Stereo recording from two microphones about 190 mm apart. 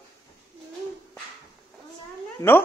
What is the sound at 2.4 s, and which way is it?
Speech, 10° left (ahead or behind).